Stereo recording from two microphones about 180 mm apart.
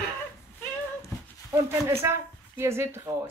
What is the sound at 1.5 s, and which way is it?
Speech, 15° right (ahead or behind).